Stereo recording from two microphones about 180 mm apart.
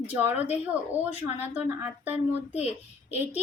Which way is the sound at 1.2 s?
35° left (ahead or behind).